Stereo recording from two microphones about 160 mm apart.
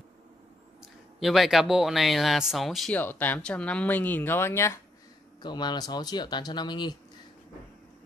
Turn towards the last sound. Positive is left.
turn(degrees=25)  # may be behind; listen again after turning